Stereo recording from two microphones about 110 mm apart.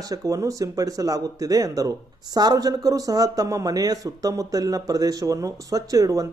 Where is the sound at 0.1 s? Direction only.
30° right (ahead or behind).